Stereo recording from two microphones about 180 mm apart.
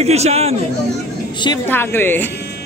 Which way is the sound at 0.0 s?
35° right (ahead or behind).